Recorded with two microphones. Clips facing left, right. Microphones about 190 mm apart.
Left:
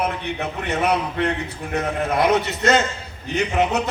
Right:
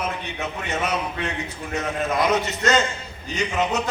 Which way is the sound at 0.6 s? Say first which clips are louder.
Left 5 dB; 60° left (ahead or behind).